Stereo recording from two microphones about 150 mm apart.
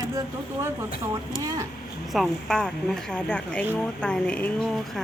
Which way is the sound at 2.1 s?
Centre (ahead or behind).